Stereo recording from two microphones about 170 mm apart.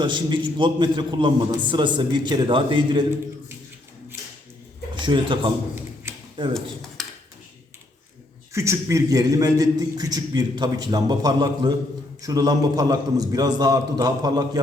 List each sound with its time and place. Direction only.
0.0 s a man's voice: 30° right (ahead or behind)
4.9 s a man's voice: 30° right (ahead or behind)
8.5 s a man's voice: 15° right (ahead or behind)